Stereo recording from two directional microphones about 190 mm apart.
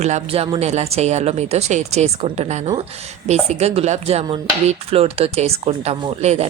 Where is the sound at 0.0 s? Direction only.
35° right (ahead or behind).